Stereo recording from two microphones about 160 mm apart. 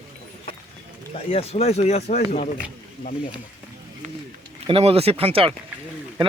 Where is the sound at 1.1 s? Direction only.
40° left (ahead or behind).